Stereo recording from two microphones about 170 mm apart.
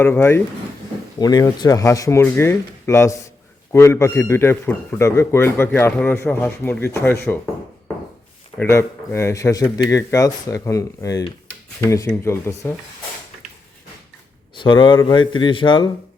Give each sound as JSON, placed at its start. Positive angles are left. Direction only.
{"t": 0.0, "sound": "a man's voice", "side_deg": 15}
{"t": 8.5, "sound": "a man's voice", "side_deg": 15}
{"t": 14.6, "sound": "speech", "side_deg": 30}